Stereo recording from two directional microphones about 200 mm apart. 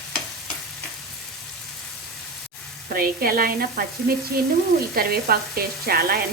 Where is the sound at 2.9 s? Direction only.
45° right (ahead or behind).